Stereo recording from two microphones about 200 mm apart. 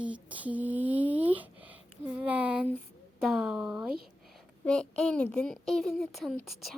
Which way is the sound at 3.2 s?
5° right (ahead or behind).